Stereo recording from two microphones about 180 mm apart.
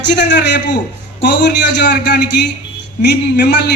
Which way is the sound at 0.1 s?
75° left (ahead or behind).